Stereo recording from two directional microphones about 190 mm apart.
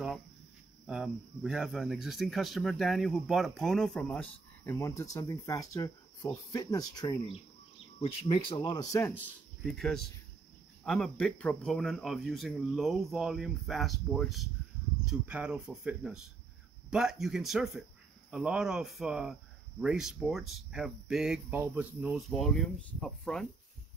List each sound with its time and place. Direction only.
0.8 s speech: 5° right (ahead or behind); by 9.1 s 15° left (ahead or behind)
9.7 s speech: centre (ahead or behind)